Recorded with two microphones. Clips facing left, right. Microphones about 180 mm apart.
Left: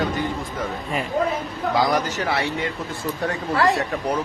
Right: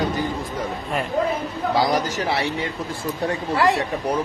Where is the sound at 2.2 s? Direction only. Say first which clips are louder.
Right 1 dB; 35° right (ahead or behind).